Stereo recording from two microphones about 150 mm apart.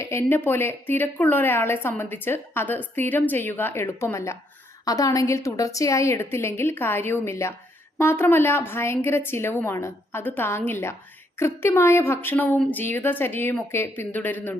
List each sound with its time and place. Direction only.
0.0 s a woman's voice: 15° left (ahead or behind)